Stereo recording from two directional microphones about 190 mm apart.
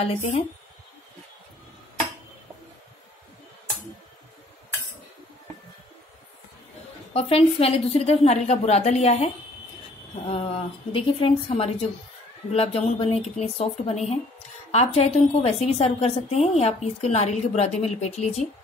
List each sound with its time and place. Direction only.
0.0 s a woman's voice: 30° left (ahead or behind)
7.2 s a woman's voice: 30° left (ahead or behind)